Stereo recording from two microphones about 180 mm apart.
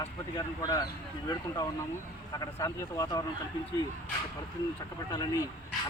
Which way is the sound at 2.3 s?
20° left (ahead or behind).